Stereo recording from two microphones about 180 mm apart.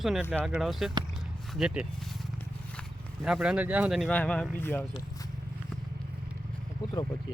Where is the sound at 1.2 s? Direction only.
Centre (ahead or behind).